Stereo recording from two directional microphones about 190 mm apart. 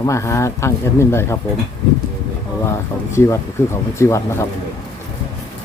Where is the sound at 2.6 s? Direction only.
15° left (ahead or behind).